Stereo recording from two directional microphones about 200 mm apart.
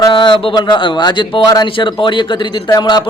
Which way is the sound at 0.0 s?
25° left (ahead or behind).